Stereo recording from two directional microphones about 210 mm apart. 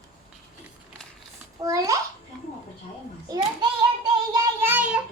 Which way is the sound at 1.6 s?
15° right (ahead or behind).